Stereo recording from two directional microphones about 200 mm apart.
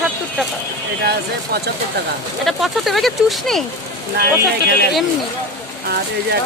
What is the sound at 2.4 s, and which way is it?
Speech, centre (ahead or behind).